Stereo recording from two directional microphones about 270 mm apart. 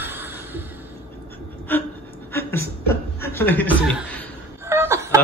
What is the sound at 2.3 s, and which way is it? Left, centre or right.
Chuckle, centre.